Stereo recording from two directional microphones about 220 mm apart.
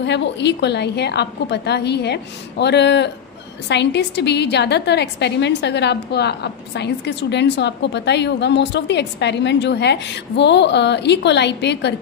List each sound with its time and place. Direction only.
0.0 s a woman's voice: 50° left (ahead or behind)